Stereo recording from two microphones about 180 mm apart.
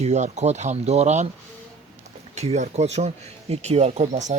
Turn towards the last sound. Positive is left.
turn(degrees=-40)  # may be behind; listen again after turning